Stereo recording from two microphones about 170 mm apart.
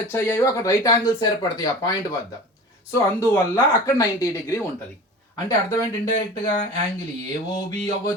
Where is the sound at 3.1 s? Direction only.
15° left (ahead or behind).